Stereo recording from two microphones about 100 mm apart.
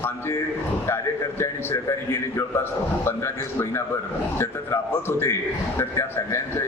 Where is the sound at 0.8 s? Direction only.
25° left (ahead or behind).